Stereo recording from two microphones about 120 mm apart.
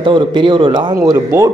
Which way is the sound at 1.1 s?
20° right (ahead or behind).